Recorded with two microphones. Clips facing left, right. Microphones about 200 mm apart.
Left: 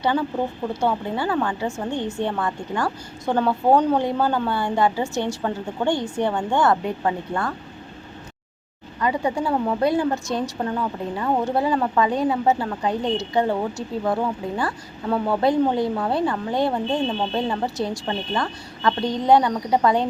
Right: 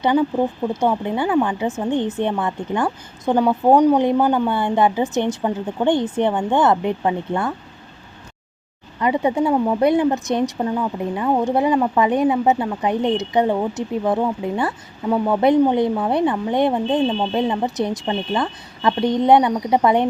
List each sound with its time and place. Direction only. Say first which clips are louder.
0.0 s a woman's voice: right 5 dB; 15° right (ahead or behind)
9.0 s a woman's voice: right 4 dB; 20° right (ahead or behind)